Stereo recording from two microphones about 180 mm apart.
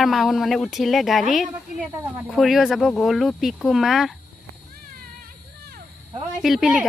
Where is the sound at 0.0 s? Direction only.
Centre (ahead or behind).